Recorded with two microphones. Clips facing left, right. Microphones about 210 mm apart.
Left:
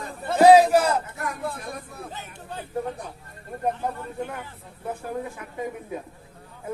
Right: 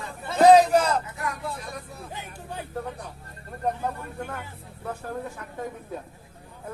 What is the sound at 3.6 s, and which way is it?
Speech, 15° left (ahead or behind).